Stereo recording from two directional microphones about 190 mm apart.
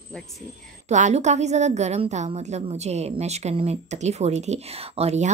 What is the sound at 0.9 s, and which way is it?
A woman's voice, 40° right (ahead or behind).